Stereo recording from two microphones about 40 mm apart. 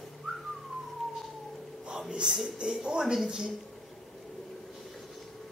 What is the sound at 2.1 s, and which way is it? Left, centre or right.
Speech, right.